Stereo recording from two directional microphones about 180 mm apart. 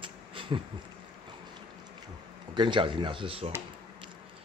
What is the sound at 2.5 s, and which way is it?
Speech, 25° right (ahead or behind).